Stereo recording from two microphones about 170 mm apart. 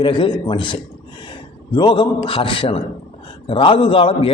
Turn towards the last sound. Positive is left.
turn(degrees=30)  # may be behind; listen again after turning